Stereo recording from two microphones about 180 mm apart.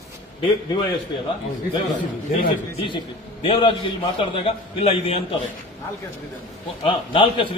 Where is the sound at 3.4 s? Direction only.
30° left (ahead or behind).